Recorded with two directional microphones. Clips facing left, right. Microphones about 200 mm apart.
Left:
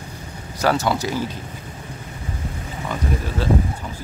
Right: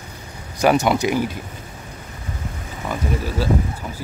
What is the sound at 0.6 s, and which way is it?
Speech, 15° right (ahead or behind).